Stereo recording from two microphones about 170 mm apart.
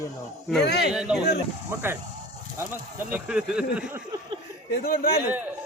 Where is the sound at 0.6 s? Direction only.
75° left (ahead or behind).